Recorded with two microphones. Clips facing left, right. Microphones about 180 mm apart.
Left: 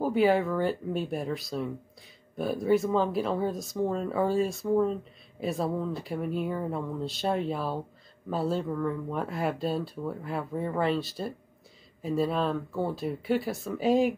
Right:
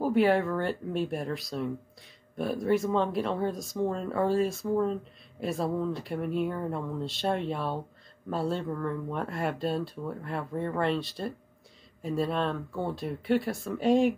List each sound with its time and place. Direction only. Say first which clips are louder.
0.0 s speech: even; centre (ahead or behind)